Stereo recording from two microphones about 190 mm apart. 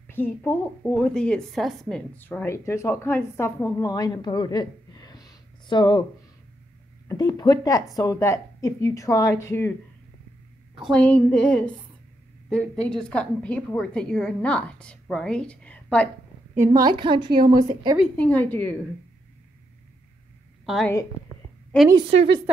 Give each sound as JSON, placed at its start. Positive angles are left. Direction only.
{"t": 0.1, "sound": "a woman's voice", "side_deg": 10}
{"t": 7.1, "sound": "a woman's voice", "side_deg": 20}
{"t": 10.8, "sound": "a woman's voice", "side_deg": 5}
{"t": 16.5, "sound": "a woman's voice", "side_deg": -15}
{"t": 17.9, "sound": "a woman's voice", "side_deg": 5}
{"t": 20.6, "sound": "a woman's voice", "side_deg": 0}
{"t": 21.8, "sound": "a woman's voice", "side_deg": -25}